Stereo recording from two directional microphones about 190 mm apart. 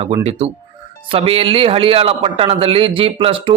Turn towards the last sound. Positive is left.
turn(degrees=-30)  # may be behind; listen again after turning